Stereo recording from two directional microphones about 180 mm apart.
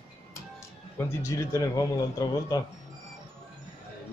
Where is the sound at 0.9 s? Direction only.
15° left (ahead or behind).